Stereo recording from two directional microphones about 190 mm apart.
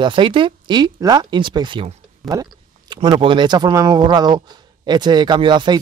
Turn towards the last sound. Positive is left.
turn(degrees=-25)  # may be behind; listen again after turning